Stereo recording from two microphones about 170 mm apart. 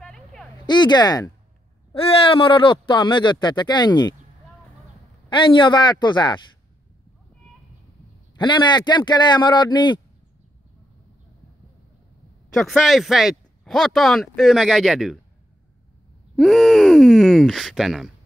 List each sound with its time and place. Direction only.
0.0 s a sound: centre (ahead or behind)
0.7 s speech: 25° left (ahead or behind)
5.3 s speech: 30° left (ahead or behind)
8.4 s speech: 25° left (ahead or behind)
12.5 s speech: centre (ahead or behind)
16.3 s speech: centre (ahead or behind)